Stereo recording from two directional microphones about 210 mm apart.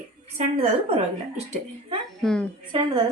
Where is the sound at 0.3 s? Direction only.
25° right (ahead or behind).